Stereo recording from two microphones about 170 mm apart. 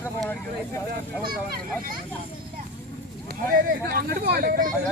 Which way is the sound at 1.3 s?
60° right (ahead or behind).